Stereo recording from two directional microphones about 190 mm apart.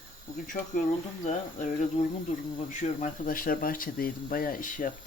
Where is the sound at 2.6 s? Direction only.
40° left (ahead or behind).